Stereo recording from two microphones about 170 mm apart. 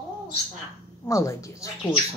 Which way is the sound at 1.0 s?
20° left (ahead or behind).